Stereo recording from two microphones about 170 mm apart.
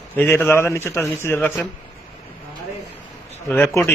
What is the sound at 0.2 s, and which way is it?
A man's voice, 10° left (ahead or behind).